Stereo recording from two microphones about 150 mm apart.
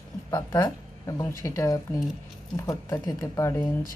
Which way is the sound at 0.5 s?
25° left (ahead or behind).